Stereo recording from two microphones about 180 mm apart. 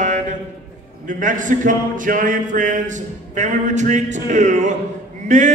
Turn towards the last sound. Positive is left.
turn(degrees=-40)  # may be behind; listen again after turning